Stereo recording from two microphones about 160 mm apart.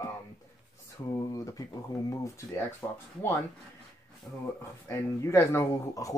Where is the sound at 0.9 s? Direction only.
20° left (ahead or behind).